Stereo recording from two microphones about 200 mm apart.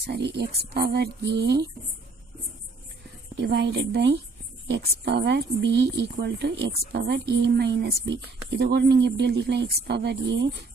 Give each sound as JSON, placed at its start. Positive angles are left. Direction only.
{"t": 0.0, "sound": "speech", "side_deg": -55}
{"t": 3.3, "sound": "speech", "side_deg": -55}